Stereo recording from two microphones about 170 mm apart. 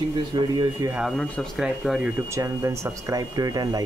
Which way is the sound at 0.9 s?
Centre (ahead or behind).